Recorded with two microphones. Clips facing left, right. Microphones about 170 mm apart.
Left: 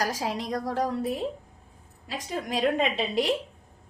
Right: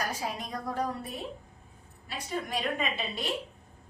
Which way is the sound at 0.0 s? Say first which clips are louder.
Left 5 dB; 90° left.